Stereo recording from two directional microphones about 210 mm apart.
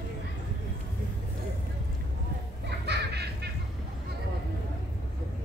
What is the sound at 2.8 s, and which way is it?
Baby laughter, 50° right (ahead or behind).